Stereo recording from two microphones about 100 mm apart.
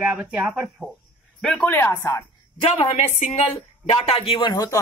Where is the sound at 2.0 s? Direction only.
25° left (ahead or behind).